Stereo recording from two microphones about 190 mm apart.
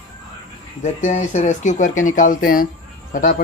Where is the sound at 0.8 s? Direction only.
35° left (ahead or behind).